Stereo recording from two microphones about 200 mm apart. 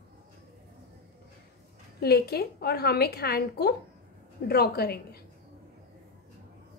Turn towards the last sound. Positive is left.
turn(degrees=50)  # may be behind; listen again after turning